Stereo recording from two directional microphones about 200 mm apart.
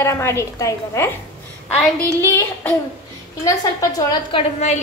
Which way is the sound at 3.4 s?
20° left (ahead or behind).